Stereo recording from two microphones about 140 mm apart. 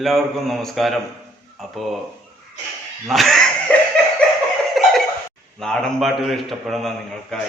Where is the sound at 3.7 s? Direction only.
10° left (ahead or behind).